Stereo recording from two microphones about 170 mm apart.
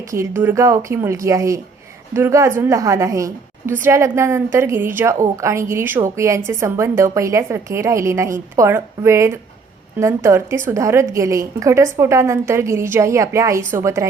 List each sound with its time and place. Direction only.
0.1 s a woman's voice: 15° right (ahead or behind)